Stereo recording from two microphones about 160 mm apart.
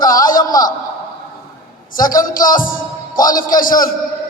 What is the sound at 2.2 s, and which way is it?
A man's voice, 60° left (ahead or behind).